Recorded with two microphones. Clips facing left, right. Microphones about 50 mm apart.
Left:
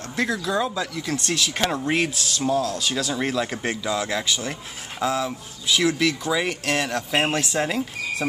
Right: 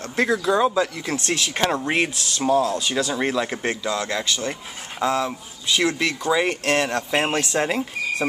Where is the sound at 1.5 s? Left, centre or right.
Centre.